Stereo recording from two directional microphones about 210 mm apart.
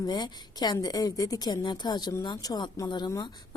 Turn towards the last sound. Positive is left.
turn(degrees=20)  # may be behind; listen again after turning